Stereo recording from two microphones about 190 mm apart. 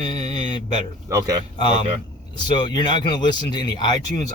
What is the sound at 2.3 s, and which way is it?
Speech, 25° left (ahead or behind).